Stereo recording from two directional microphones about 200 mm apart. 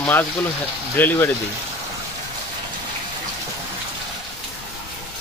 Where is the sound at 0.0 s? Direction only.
10° left (ahead or behind).